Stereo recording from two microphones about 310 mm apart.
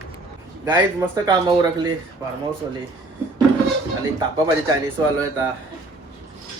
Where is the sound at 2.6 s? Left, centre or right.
Centre.